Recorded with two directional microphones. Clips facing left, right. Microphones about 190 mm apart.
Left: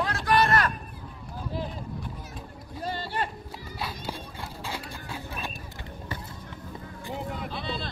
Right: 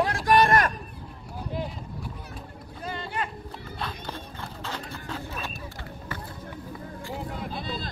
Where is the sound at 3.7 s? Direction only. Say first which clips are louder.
Left 1 dB; 10° left (ahead or behind).